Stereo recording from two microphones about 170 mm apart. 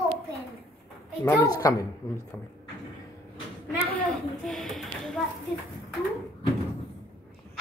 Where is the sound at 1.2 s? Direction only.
20° left (ahead or behind).